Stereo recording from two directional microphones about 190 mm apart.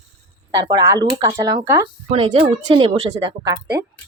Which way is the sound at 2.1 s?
30° right (ahead or behind).